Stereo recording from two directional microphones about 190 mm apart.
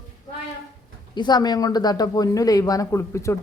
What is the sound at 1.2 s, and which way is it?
Speech, 20° left (ahead or behind).